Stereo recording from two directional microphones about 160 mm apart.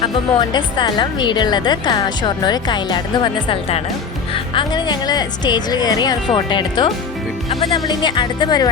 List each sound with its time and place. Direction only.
0.0 s speech: 30° left (ahead or behind)
4.5 s speech: 25° left (ahead or behind)